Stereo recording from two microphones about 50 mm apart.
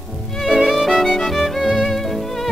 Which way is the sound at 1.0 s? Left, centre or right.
Centre.